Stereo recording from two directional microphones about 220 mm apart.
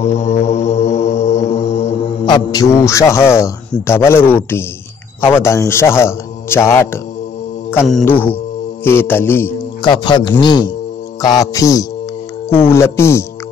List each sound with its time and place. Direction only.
0.2 s mantra: 30° left (ahead or behind)
2.2 s a man's voice: 20° left (ahead or behind)
7.7 s mantra: centre (ahead or behind)
8.0 s a man's voice: 10° left (ahead or behind)
9.8 s a man's voice: 20° left (ahead or behind)